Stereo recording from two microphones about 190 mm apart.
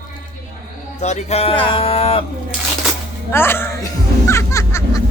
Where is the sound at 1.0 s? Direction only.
35° left (ahead or behind).